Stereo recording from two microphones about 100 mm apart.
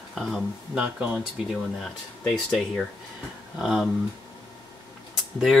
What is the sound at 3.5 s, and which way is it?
Speech, 5° right (ahead or behind).